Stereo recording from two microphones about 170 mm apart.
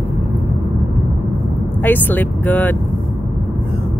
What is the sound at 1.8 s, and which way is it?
Speech, 10° left (ahead or behind).